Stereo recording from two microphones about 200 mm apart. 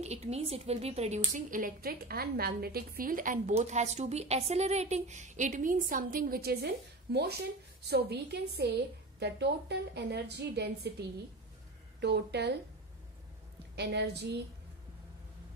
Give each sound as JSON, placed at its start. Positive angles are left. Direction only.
{"t": 0.0, "sound": "a woman's voice", "side_deg": -30}
{"t": 13.7, "sound": "a woman's voice", "side_deg": -55}